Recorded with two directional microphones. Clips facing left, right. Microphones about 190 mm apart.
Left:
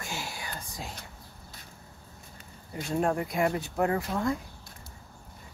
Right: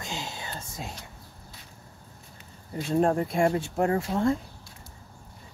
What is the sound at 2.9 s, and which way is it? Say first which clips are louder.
Speech: right 4 dB; 35° right (ahead or behind).